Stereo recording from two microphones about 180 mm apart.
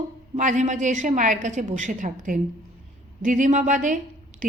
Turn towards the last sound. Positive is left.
turn(degrees=-45)  # may be behind; listen again after turning